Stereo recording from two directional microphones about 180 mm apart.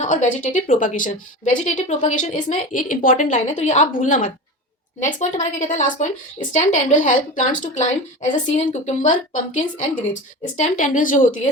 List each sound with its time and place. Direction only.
0.0 s a woman's voice: 40° left (ahead or behind)